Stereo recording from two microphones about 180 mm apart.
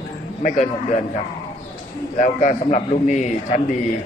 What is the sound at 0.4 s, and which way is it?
A man's voice, 45° left (ahead or behind).